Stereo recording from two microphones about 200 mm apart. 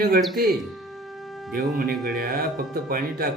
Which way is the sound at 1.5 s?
45° right (ahead or behind).